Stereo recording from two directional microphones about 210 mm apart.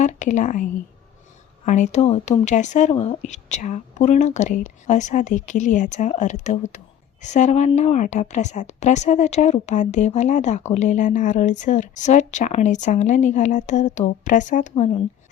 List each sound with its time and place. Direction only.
0.0 s speech: 35° left (ahead or behind)